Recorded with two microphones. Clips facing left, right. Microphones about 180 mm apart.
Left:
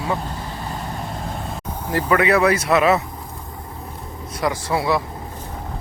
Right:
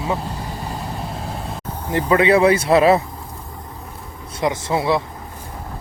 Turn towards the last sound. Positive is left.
turn(degrees=-25)  # may be behind; listen again after turning